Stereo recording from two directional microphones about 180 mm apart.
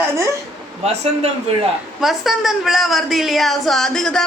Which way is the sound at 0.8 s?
35° right (ahead or behind).